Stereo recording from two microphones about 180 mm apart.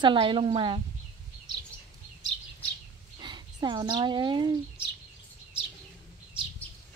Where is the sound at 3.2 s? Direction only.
25° right (ahead or behind).